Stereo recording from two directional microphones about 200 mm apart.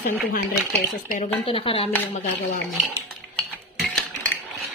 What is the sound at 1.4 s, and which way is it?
Dishes, 30° left (ahead or behind).